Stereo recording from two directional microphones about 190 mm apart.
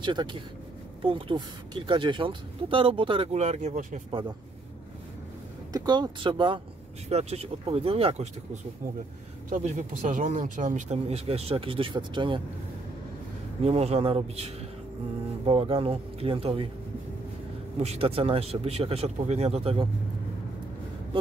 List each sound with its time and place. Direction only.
0.0 s speech: 25° right (ahead or behind); by 4.0 s 40° right (ahead or behind)
5.7 s speech: 20° right (ahead or behind)
9.5 s speech: 40° right (ahead or behind)
13.6 s speech: 35° right (ahead or behind)
17.7 s speech: 30° right (ahead or behind)